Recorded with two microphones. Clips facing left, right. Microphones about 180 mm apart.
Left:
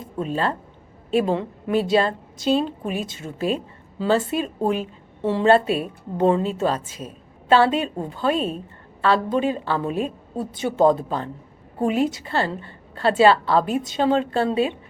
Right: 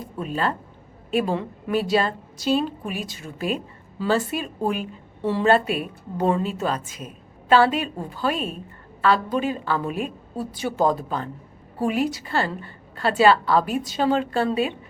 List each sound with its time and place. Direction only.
0.0 s a woman's voice: 25° left (ahead or behind)